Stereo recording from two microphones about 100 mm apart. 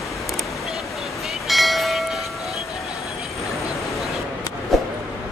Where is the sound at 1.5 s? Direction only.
Centre (ahead or behind).